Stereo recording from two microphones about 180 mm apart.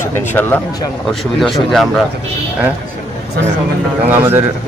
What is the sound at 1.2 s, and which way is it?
Speech, centre (ahead or behind).